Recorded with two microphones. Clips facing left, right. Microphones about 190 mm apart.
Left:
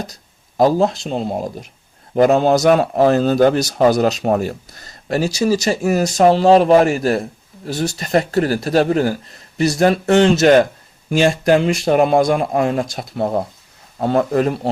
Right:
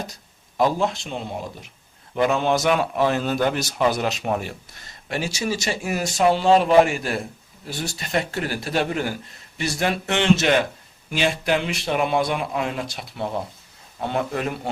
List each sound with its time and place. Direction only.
0.1 s a man's voice: 40° left (ahead or behind)